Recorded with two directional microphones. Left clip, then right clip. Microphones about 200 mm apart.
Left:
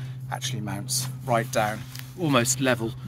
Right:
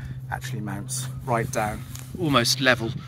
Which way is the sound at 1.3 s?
15° left (ahead or behind).